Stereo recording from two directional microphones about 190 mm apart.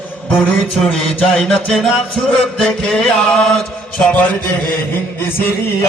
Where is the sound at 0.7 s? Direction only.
5° left (ahead or behind).